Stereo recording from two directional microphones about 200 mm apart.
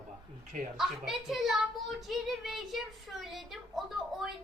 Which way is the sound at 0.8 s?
Centre (ahead or behind).